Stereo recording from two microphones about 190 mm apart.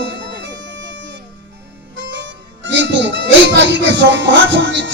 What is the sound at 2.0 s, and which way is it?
Harmonica, 70° right (ahead or behind).